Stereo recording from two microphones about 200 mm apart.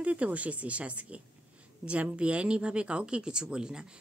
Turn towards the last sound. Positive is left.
turn(degrees=-5)  # may be behind; listen again after turning